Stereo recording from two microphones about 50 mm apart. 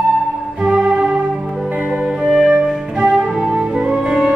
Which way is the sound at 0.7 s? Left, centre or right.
Centre.